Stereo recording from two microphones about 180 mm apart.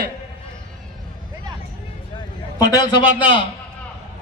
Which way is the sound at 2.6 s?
25° left (ahead or behind).